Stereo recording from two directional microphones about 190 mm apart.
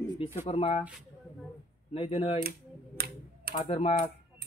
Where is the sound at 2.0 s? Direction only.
30° left (ahead or behind).